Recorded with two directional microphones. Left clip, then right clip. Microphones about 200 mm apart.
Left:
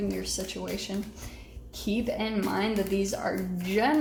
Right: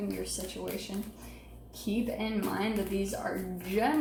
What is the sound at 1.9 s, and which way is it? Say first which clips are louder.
A woman's voice: left 4 dB; 45° left (ahead or behind).